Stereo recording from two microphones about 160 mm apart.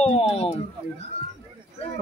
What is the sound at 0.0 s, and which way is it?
Speech, 40° left (ahead or behind).